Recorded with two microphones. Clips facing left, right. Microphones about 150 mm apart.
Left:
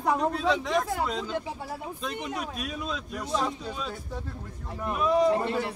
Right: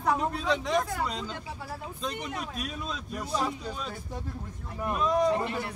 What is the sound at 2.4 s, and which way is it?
A man's voice, centre (ahead or behind).